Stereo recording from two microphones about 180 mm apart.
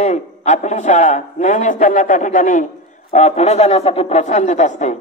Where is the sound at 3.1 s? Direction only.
40° left (ahead or behind).